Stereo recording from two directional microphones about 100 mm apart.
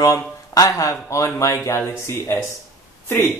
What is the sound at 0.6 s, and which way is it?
Speech, 30° left (ahead or behind).